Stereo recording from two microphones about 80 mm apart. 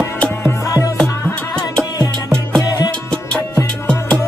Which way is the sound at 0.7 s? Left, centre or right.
Left.